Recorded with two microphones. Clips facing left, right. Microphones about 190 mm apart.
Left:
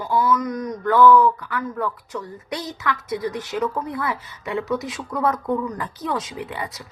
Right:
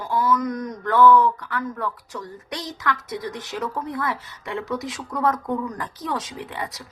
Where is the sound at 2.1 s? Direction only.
10° left (ahead or behind).